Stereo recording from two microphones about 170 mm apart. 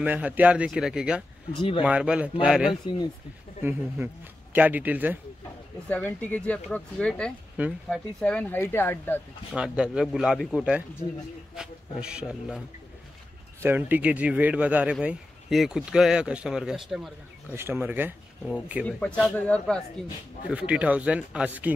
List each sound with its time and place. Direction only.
0.0 s speech: 10° right (ahead or behind)
1.5 s speech: 30° left (ahead or behind)
1.8 s speech: 5° right (ahead or behind)
5.9 s speech: 10° left (ahead or behind)
7.6 s speech: 10° right (ahead or behind)
7.9 s speech: 5° left (ahead or behind)
9.5 s a man's voice: 5° right (ahead or behind)
17.6 s speech: 10° right (ahead or behind)
18.9 s speech: 5° left (ahead or behind)
20.5 s speech: 10° right (ahead or behind)